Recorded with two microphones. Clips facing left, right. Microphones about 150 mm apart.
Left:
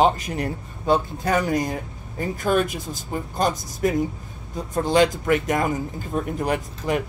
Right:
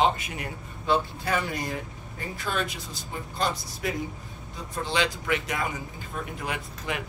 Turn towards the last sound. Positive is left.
turn(degrees=40)  # may be behind; listen again after turning